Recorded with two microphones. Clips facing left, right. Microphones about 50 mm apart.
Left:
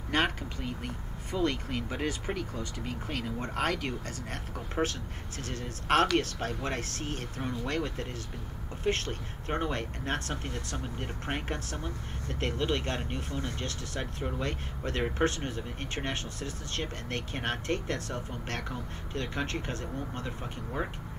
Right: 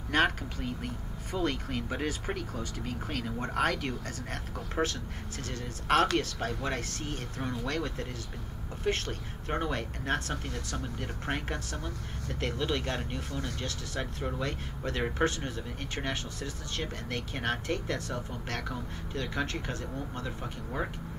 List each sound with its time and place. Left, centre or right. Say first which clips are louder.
0.1 s a sound: right 2 dB; centre
2.0 s speech: left 1 dB; centre
4.8 s speech: even; centre
5.4 s speech: left 2 dB; centre
8.9 s speech: left 1 dB; centre
10.3 s speech: even; centre
13.9 s speech: right 1 dB; centre
15.5 s speech: left 1 dB; centre